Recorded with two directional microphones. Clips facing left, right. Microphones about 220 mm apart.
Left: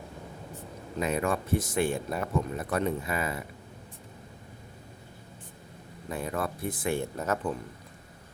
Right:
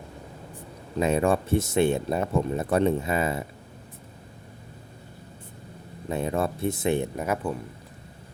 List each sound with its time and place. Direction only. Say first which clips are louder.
0.9 s speech: right 6 dB; 30° right (ahead or behind)
6.1 s speech: right 6 dB; 25° right (ahead or behind)